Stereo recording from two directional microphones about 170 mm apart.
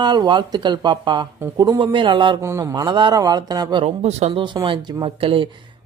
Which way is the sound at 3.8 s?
40° right (ahead or behind).